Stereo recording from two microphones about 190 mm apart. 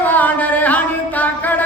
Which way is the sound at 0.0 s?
10° left (ahead or behind).